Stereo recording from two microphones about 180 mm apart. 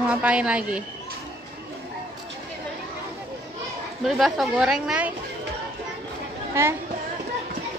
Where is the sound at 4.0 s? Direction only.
Centre (ahead or behind).